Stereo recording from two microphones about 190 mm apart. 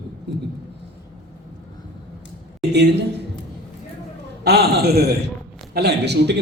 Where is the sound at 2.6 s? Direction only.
60° right (ahead or behind).